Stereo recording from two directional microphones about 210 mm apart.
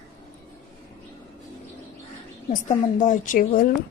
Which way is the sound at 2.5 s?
40° left (ahead or behind).